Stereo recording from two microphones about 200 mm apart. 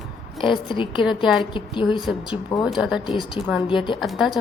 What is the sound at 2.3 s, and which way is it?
Speech, 20° left (ahead or behind).